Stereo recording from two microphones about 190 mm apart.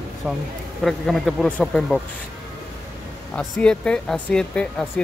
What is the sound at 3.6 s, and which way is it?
Speech, 5° left (ahead or behind).